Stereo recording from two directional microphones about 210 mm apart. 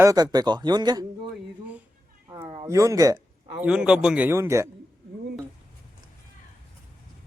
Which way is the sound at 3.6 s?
5° right (ahead or behind).